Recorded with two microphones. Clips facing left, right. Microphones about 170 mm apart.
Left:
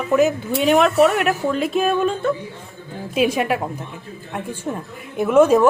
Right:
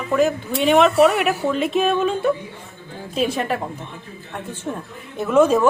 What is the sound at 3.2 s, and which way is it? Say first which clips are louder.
Speech: left 3 dB; 10° left (ahead or behind).